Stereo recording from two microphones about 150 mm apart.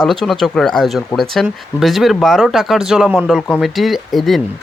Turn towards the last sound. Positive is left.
turn(degrees=0)  # may be behind; listen again after turning